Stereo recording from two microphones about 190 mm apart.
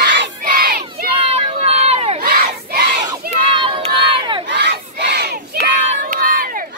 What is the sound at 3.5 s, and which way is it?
Crowd, 25° right (ahead or behind).